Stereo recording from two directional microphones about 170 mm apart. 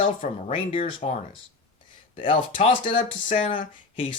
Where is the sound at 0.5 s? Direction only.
35° left (ahead or behind).